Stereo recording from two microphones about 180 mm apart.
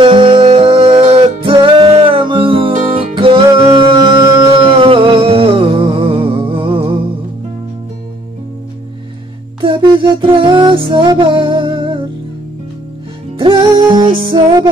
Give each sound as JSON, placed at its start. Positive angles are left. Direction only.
{"t": 0.0, "sound": "music", "side_deg": -25}
{"t": 3.7, "sound": "music", "side_deg": -25}
{"t": 9.6, "sound": "music", "side_deg": -30}
{"t": 13.4, "sound": "music", "side_deg": -25}